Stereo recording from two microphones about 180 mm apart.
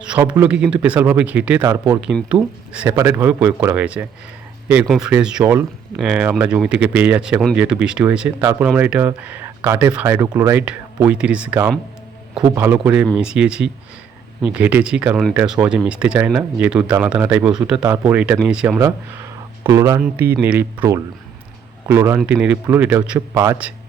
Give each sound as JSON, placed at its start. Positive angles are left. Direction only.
{"t": 0.0, "sound": "speech", "side_deg": -5}
{"t": 19.6, "sound": "speech", "side_deg": -15}